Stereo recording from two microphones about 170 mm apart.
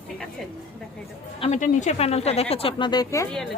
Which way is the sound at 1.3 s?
40° left (ahead or behind).